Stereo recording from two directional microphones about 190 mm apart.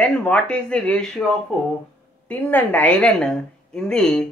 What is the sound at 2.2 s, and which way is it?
A woman's voice, 10° left (ahead or behind).